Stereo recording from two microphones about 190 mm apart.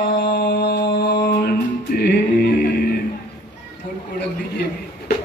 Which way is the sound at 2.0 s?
60° left (ahead or behind).